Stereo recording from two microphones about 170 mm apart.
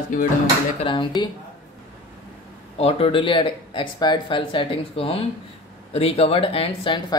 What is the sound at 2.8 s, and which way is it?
Speech, 35° left (ahead or behind).